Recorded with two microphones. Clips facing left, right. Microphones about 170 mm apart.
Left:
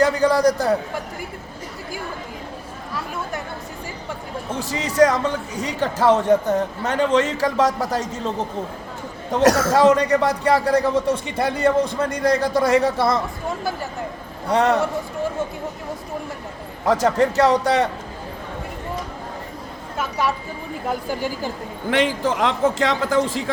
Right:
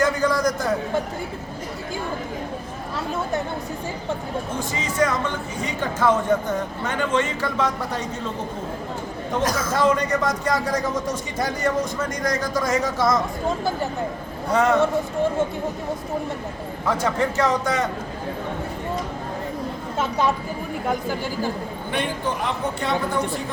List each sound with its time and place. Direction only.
0.0 s a sound: 35° left (ahead or behind)
4.7 s speech: 35° left (ahead or behind)
9.4 s a man's voice: 75° left (ahead or behind)
10.5 s speech: 30° left (ahead or behind)
14.5 s speech: 35° left (ahead or behind)
16.8 s speech: 40° left (ahead or behind)
20.0 s speech: 20° right (ahead or behind)
21.8 s speech: 90° left